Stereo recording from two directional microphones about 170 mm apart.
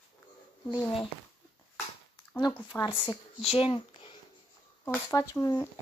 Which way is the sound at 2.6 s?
25° left (ahead or behind).